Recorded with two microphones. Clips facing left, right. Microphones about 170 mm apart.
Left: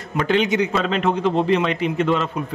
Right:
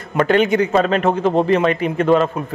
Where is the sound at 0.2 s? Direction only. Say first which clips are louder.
Right 4 dB; 50° right (ahead or behind).